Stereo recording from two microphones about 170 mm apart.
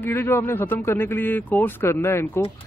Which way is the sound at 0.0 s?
15° left (ahead or behind).